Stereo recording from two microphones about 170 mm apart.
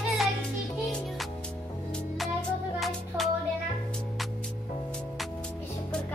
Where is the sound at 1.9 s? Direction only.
Centre (ahead or behind).